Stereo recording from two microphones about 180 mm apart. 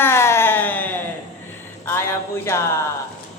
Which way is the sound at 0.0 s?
15° left (ahead or behind).